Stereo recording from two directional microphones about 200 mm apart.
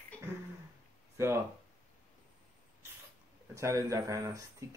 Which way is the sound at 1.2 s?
15° right (ahead or behind).